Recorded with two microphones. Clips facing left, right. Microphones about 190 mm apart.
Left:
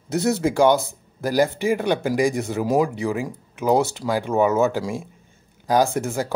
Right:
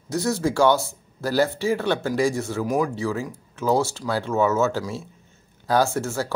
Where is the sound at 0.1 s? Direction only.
20° left (ahead or behind).